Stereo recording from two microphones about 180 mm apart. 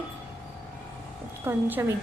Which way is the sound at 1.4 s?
15° right (ahead or behind).